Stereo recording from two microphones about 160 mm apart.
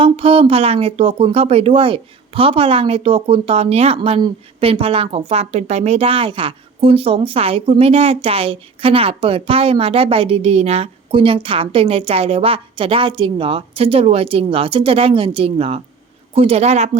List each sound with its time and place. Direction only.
0.0 s speech: 35° right (ahead or behind)